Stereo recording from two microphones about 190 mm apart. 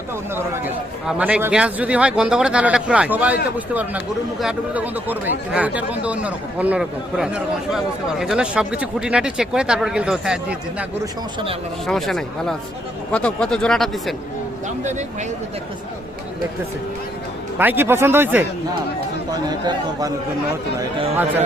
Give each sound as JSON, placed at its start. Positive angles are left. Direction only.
{"t": 0.3, "sound": "a man's voice", "side_deg": -10}
{"t": 11.0, "sound": "speech", "side_deg": -25}
{"t": 11.9, "sound": "speech", "side_deg": 0}
{"t": 17.6, "sound": "a man's voice", "side_deg": -10}
{"t": 19.3, "sound": "speech", "side_deg": -20}